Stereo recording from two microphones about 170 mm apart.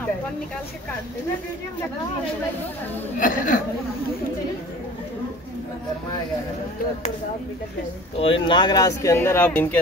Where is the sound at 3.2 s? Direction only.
50° left (ahead or behind).